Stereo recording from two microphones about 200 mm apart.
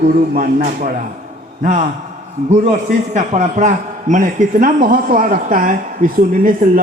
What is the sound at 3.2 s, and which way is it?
Speech, 35° right (ahead or behind).